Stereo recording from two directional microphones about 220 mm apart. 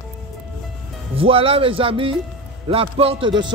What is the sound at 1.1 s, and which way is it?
Speech, 25° right (ahead or behind).